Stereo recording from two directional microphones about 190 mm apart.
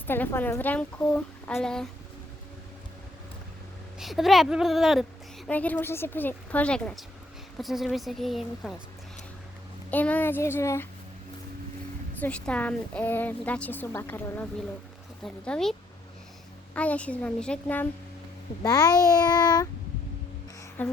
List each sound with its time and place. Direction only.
0.1 s a woman's voice: 10° left (ahead or behind)
4.0 s a woman's voice: centre (ahead or behind)
9.9 s a woman's voice: 10° left (ahead or behind)
12.2 s a woman's voice: 5° left (ahead or behind)
16.7 s a woman's voice: 5° left (ahead or behind)
18.6 s a child's voice: 20° left (ahead or behind)
20.8 s a woman's voice: 10° left (ahead or behind)